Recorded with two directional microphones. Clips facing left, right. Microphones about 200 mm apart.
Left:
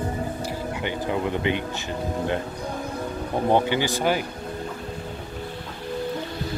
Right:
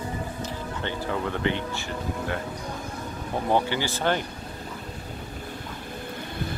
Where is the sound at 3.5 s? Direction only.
15° left (ahead or behind).